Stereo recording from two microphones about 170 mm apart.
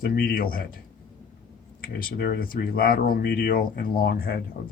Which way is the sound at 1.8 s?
65° left (ahead or behind).